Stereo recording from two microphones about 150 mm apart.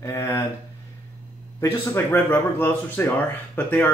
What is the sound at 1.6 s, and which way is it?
Speech, 15° left (ahead or behind).